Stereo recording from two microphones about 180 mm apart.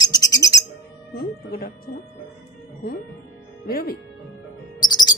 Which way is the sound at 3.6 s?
55° left (ahead or behind).